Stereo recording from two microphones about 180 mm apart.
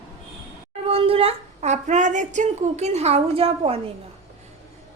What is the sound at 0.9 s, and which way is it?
Speech, 30° right (ahead or behind).